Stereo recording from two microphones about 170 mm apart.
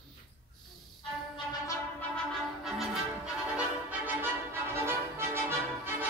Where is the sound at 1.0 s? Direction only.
30° left (ahead or behind).